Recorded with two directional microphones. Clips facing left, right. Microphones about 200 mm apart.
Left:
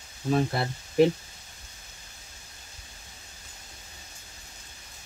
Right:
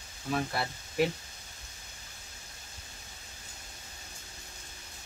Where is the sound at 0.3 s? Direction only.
30° left (ahead or behind).